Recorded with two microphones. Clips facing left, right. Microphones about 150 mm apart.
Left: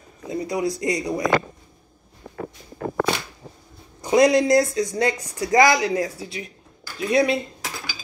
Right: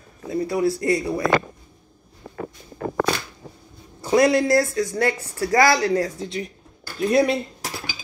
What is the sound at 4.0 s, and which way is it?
Speech, 15° left (ahead or behind).